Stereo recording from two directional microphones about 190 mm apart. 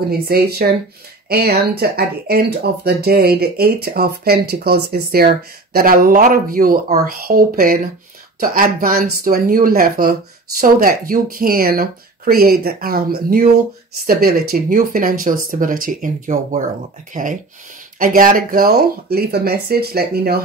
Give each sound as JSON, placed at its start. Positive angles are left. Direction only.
{"t": 0.3, "sound": "speech", "side_deg": -55}